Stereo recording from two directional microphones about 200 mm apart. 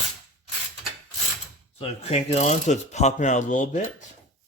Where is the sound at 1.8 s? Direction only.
30° left (ahead or behind).